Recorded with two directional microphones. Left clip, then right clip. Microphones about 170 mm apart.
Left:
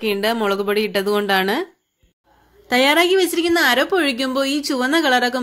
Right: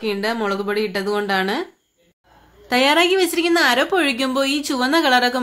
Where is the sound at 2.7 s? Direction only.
25° left (ahead or behind).